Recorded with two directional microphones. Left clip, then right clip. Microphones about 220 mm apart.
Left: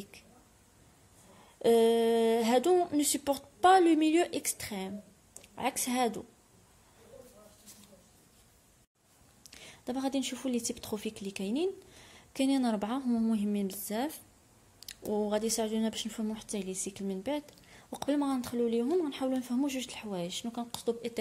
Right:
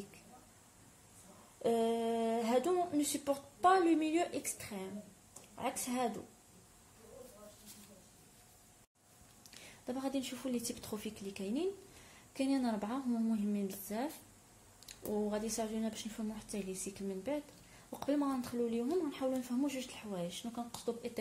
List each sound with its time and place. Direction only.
1.6 s speech: 40° left (ahead or behind)
9.4 s a woman's voice: 35° left (ahead or behind)